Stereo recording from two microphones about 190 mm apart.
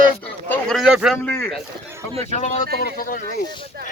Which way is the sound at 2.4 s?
40° left (ahead or behind).